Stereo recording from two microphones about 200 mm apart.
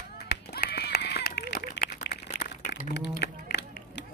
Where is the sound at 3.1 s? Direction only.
55° left (ahead or behind).